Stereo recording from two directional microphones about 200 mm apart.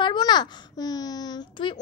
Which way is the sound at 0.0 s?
20° left (ahead or behind).